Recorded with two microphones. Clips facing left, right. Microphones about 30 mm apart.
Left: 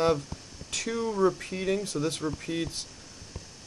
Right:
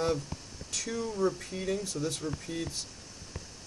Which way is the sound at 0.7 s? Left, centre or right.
Left.